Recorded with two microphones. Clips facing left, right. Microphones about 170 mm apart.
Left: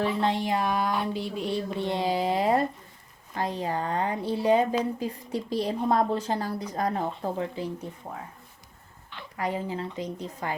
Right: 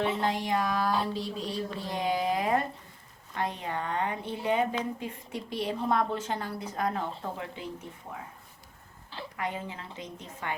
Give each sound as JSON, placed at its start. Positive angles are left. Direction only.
{"t": 0.2, "sound": "speech", "side_deg": 25}
{"t": 1.1, "sound": "a woman's voice", "side_deg": 0}
{"t": 1.8, "sound": "a woman's voice", "side_deg": 30}
{"t": 9.4, "sound": "a woman's voice", "side_deg": 35}